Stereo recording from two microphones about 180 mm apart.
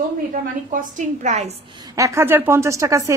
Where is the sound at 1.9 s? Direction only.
15° right (ahead or behind).